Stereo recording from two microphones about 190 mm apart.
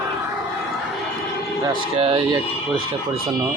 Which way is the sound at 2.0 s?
30° right (ahead or behind).